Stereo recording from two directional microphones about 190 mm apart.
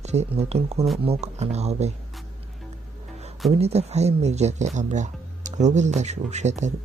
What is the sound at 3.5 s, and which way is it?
Speech, 35° right (ahead or behind).